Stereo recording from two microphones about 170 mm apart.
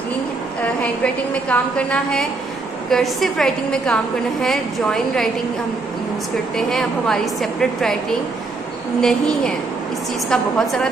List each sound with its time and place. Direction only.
0.6 s a woman's voice: 10° left (ahead or behind)
6.5 s a woman's voice: 5° left (ahead or behind)
10.3 s a woman's voice: 5° left (ahead or behind)